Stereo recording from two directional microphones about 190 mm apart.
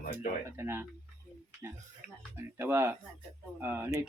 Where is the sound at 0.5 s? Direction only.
15° right (ahead or behind).